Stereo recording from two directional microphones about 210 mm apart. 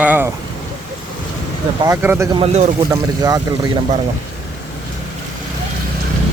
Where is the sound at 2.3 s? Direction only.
30° right (ahead or behind).